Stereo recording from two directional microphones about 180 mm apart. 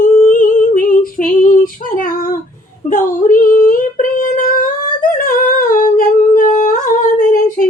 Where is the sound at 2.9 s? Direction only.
45° left (ahead or behind).